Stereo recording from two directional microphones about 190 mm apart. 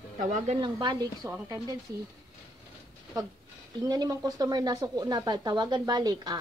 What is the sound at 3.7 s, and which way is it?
A woman's voice, 20° right (ahead or behind).